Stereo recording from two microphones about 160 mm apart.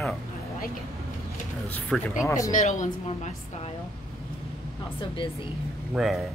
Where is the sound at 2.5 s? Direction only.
50° left (ahead or behind).